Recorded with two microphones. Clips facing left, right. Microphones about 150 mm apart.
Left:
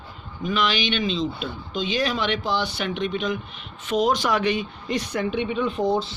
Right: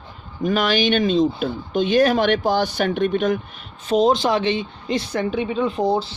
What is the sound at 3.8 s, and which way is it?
Speech, 30° right (ahead or behind).